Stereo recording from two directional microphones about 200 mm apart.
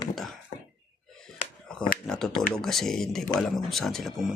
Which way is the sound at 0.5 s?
40° left (ahead or behind).